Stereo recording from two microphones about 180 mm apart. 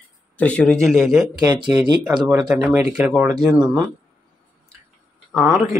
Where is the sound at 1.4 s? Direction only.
25° right (ahead or behind).